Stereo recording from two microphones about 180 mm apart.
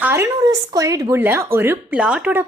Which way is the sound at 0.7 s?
20° right (ahead or behind).